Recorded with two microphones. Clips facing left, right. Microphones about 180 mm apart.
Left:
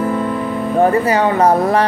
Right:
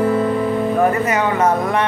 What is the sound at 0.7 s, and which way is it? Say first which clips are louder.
Speech: left 7 dB; 30° left (ahead or behind).